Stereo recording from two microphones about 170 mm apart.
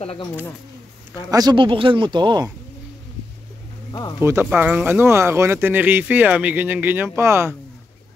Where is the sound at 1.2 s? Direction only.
20° right (ahead or behind).